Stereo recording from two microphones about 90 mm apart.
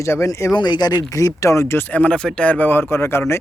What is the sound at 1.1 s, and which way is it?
Speech, 35° left (ahead or behind).